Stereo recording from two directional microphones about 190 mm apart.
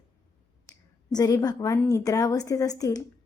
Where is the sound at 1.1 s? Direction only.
20° left (ahead or behind).